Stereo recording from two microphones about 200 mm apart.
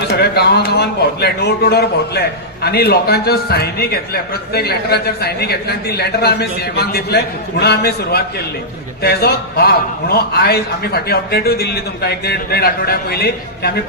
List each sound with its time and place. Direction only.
0.2 s a man's voice: 55° left (ahead or behind)